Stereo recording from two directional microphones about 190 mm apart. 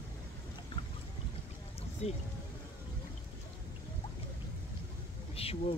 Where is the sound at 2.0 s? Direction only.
35° left (ahead or behind).